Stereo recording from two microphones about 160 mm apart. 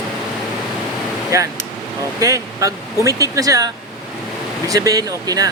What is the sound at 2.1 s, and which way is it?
Speech, 20° right (ahead or behind).